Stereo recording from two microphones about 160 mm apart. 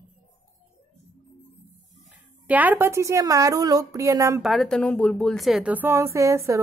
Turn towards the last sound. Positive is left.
turn(degrees=-20)  # may be behind; listen again after turning